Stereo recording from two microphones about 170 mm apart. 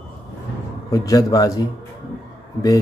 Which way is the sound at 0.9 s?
20° left (ahead or behind).